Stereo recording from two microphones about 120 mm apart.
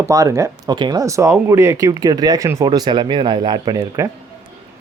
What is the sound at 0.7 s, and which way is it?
Speech, 40° right (ahead or behind).